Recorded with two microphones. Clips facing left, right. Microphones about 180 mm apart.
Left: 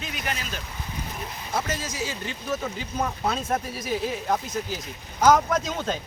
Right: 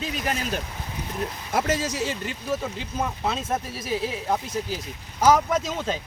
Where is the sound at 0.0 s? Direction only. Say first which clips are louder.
Right 5 dB; 35° right (ahead or behind).